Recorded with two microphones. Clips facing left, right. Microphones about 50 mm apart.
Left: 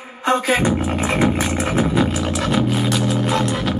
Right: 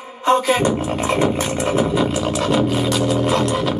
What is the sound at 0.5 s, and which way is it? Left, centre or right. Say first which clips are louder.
Beatboxing: even; centre.